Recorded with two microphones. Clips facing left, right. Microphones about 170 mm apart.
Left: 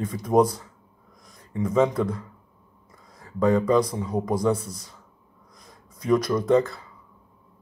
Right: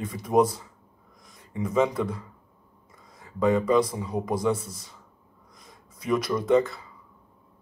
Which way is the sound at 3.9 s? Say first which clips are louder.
Left 3 dB; 5° right (ahead or behind).